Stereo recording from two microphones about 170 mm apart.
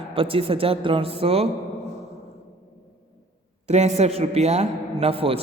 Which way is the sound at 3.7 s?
40° right (ahead or behind).